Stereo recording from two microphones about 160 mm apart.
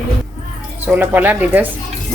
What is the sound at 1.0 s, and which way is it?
Speech, 10° right (ahead or behind).